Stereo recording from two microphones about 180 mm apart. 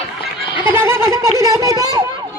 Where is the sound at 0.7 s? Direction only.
15° right (ahead or behind).